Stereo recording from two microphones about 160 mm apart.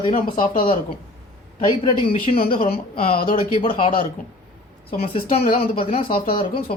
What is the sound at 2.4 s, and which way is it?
Speech, 65° left (ahead or behind).